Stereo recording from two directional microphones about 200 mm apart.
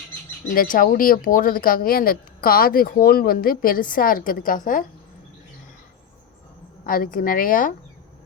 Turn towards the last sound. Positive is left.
turn(degrees=45)  # may be behind; listen again after turning